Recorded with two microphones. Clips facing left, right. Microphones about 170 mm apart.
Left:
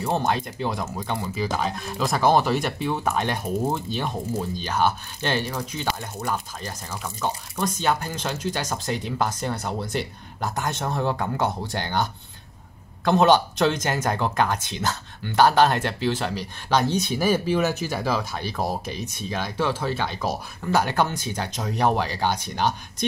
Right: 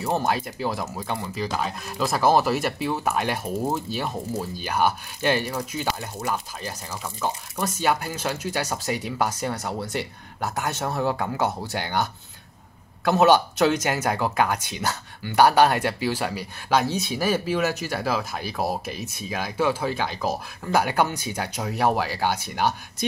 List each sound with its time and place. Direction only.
0.2 s speech: 5° right (ahead or behind)